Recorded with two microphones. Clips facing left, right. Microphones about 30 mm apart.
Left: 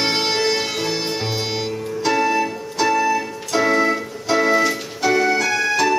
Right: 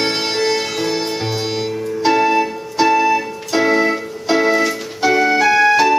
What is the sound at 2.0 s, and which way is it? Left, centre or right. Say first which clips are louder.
Music: right 4 dB; right.